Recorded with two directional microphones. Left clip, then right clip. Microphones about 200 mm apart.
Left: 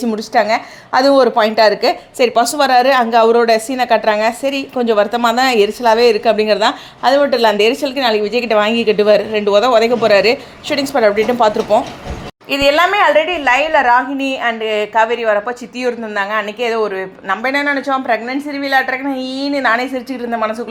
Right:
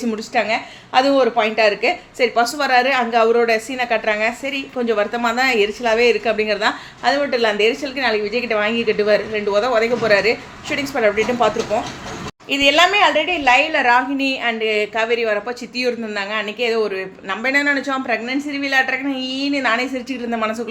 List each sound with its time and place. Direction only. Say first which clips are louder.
0.0 s a woman's voice: left 6 dB; 30° left (ahead or behind)
12.5 s a woman's voice: left 2 dB; 15° left (ahead or behind)
20.3 s a woman's voice: left 4 dB; centre (ahead or behind)